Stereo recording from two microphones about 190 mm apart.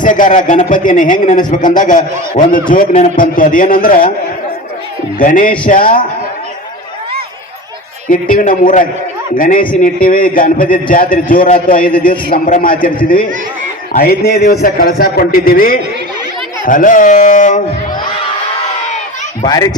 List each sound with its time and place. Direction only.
0.0 s a man's voice: 45° left (ahead or behind)
5.2 s a man's voice: 45° left (ahead or behind)
8.1 s a man's voice: 45° left (ahead or behind)
19.5 s speech: 20° left (ahead or behind)